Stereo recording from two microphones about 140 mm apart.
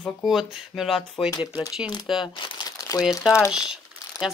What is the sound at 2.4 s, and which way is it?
Crumpling, 30° left (ahead or behind).